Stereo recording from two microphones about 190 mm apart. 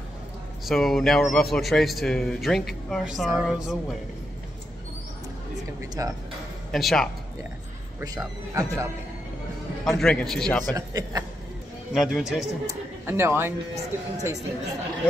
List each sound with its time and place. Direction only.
0.7 s a man's voice: centre (ahead or behind)
5.8 s music: 20° right (ahead or behind)
6.7 s a man's voice: centre (ahead or behind)
8.0 s speech: 20° right (ahead or behind)
9.8 s a man's voice: centre (ahead or behind)
10.7 s a man's voice: 20° right (ahead or behind)
11.9 s a man's voice: centre (ahead or behind)
12.6 s speech: 15° right (ahead or behind)